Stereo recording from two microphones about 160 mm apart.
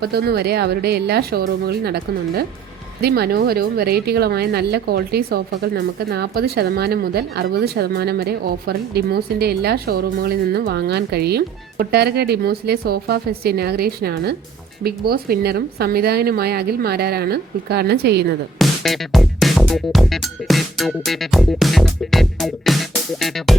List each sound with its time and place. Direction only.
0.0 s speech: 80° right
14.8 s speech: 75° right (ahead or behind); by 18.3 s 90° right
18.6 s music: centre (ahead or behind)